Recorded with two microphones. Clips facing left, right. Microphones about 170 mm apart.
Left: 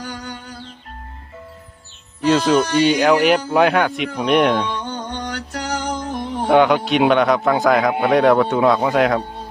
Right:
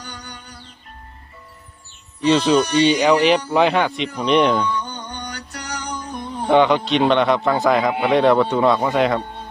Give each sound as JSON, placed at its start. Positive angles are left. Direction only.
{"t": 0.0, "sound": "music", "side_deg": 90}
{"t": 2.2, "sound": "a man's voice", "side_deg": 5}
{"t": 4.8, "sound": "mantra", "side_deg": 50}
{"t": 5.2, "sound": "music", "side_deg": 90}
{"t": 6.5, "sound": "a man's voice", "side_deg": 0}